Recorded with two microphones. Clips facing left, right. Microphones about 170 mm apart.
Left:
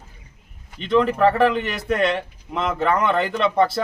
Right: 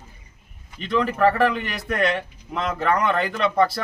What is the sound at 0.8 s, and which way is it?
Speech, 25° left (ahead or behind).